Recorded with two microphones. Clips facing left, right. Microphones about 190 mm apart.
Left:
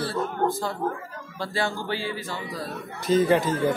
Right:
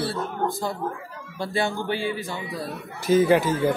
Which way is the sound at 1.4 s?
20° right (ahead or behind).